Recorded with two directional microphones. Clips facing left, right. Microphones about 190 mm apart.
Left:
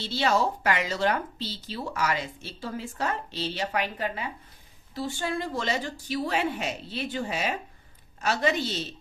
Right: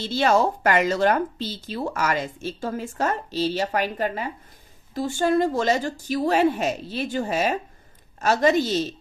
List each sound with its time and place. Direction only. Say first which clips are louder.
0.0 s speech: right 5 dB; 50° right (ahead or behind)